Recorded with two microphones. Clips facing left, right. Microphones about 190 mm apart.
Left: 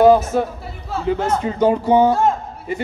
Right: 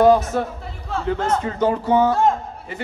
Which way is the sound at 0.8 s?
10° left (ahead or behind).